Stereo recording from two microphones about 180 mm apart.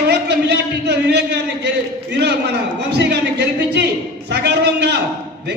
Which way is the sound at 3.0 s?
70° right (ahead or behind).